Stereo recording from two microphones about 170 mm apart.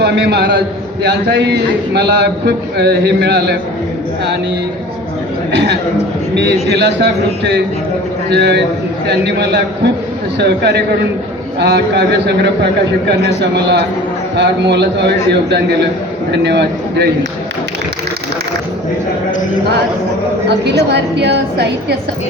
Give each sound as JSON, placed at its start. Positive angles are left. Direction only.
{"t": 0.0, "sound": "a man's voice", "side_deg": -80}
{"t": 5.5, "sound": "a man's voice", "side_deg": -90}
{"t": 14.3, "sound": "a man's voice", "side_deg": -85}
{"t": 20.5, "sound": "a man's voice", "side_deg": -80}